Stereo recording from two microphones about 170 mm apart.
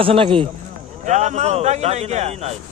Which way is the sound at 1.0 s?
45° right (ahead or behind).